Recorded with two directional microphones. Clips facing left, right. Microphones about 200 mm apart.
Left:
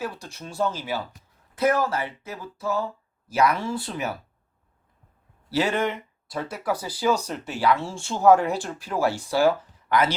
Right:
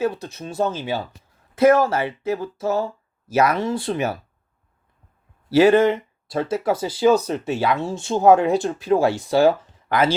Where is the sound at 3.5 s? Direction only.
20° right (ahead or behind).